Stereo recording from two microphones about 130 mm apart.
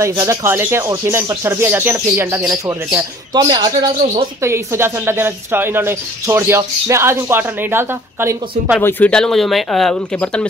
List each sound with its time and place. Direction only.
0.2 s speech: 25° right (ahead or behind)
3.3 s a man's voice: 35° right (ahead or behind)
4.4 s speech: 20° right (ahead or behind)
8.8 s speech: 10° left (ahead or behind)